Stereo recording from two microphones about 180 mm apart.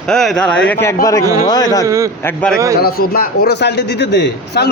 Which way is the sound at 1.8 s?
15° right (ahead or behind).